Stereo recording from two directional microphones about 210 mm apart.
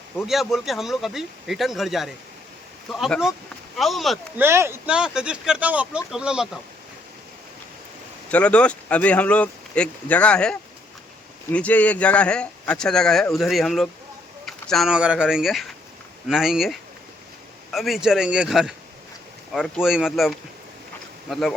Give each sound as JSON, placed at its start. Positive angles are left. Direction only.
{"t": 0.2, "sound": "speech", "side_deg": 0}
{"t": 4.4, "sound": "speech", "side_deg": -10}
{"t": 8.3, "sound": "speech", "side_deg": 5}